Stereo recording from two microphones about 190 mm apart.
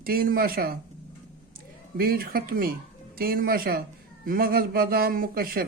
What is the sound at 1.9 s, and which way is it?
A man's voice, 50° right (ahead or behind).